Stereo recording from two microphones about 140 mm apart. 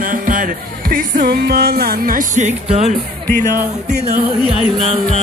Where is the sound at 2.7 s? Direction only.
50° right (ahead or behind).